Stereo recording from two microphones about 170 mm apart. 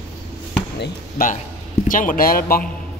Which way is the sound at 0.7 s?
55° left (ahead or behind).